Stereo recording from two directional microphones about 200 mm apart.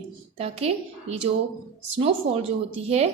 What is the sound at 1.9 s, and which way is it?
Speech, 30° right (ahead or behind).